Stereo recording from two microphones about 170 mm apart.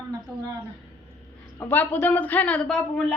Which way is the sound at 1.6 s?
10° left (ahead or behind).